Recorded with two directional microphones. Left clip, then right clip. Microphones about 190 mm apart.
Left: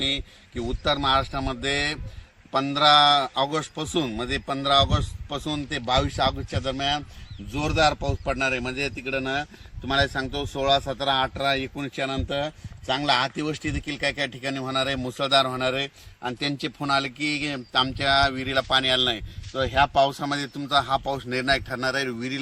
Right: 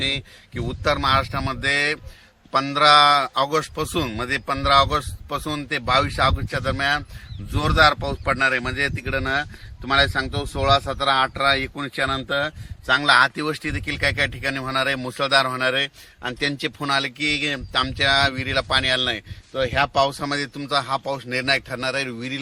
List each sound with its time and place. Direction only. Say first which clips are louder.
0.7 s a man's voice: right 3 dB; centre (ahead or behind)
8.2 s speech: right 6 dB; 20° left (ahead or behind)
10.2 s a man's voice: right 2 dB; centre (ahead or behind)
10.7 s a man's voice: right 4 dB; 25° left (ahead or behind); by 22.4 s 40° right (ahead or behind)